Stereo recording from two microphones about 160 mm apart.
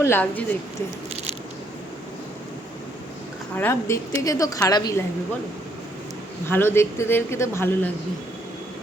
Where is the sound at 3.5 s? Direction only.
15° left (ahead or behind).